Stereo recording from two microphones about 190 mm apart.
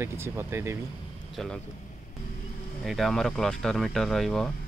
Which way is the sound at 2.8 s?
Centre (ahead or behind).